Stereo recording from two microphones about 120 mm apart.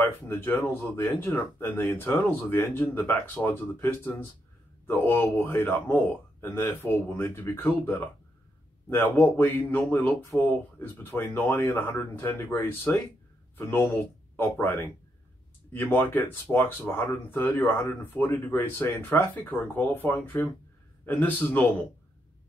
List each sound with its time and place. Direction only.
0.0 s speech: 15° left (ahead or behind)